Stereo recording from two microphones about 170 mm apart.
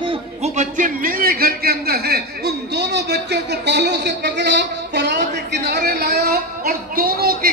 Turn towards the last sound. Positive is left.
turn(degrees=-60)  # may be behind; listen again after turning